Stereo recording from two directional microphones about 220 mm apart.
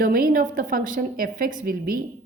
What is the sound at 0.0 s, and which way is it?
A woman's voice, 40° right (ahead or behind).